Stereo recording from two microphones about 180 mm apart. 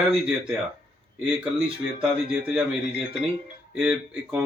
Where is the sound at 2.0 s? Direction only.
5° right (ahead or behind).